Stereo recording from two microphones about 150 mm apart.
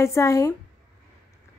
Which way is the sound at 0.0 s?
20° left (ahead or behind).